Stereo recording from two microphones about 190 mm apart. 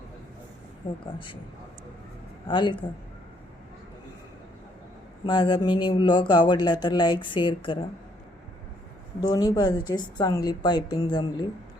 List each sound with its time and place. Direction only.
1.0 s a woman's voice: 25° left (ahead or behind)
2.5 s a woman's voice: 25° left (ahead or behind)
5.2 s a woman's voice: 25° left (ahead or behind)
9.2 s a woman's voice: 20° left (ahead or behind)